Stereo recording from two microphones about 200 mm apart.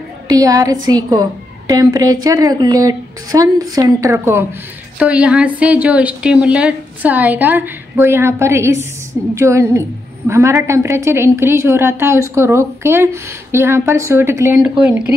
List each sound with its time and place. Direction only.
0.3 s a woman's voice: 15° right (ahead or behind)